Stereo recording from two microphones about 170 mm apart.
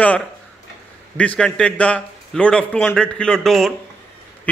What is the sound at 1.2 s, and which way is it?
A man's voice, 5° left (ahead or behind).